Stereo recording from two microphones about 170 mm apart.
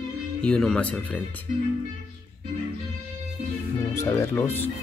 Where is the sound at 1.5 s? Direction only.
55° right (ahead or behind).